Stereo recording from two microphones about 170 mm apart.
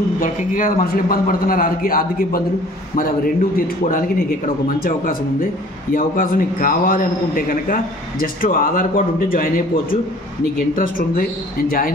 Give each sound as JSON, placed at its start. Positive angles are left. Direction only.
{"t": 0.2, "sound": "a man's voice", "side_deg": 55}
{"t": 3.5, "sound": "a man's voice", "side_deg": 55}
{"t": 10.8, "sound": "a man's voice", "side_deg": 55}